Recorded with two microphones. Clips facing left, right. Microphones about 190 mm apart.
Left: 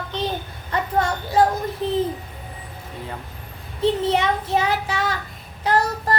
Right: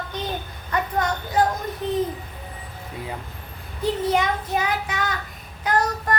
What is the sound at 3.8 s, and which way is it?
Child singing, 25° left (ahead or behind).